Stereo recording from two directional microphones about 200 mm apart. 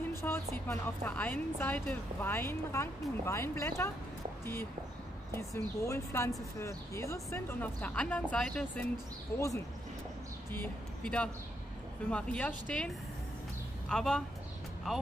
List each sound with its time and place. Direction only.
0.2 s speech: 10° left (ahead or behind)
5.3 s speech: 15° left (ahead or behind)
10.5 s a woman's voice: 10° left (ahead or behind)